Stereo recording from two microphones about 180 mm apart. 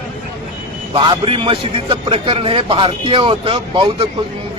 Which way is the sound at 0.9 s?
30° right (ahead or behind).